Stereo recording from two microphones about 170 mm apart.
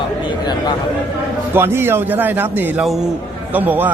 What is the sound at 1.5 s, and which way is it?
A man's voice, 15° right (ahead or behind).